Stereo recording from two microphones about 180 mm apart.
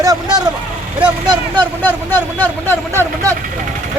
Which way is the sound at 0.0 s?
20° right (ahead or behind).